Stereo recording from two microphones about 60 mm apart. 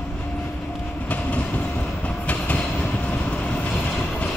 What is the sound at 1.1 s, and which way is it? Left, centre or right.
Train, left.